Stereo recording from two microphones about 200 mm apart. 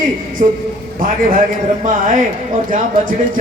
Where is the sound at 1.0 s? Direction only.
45° right (ahead or behind).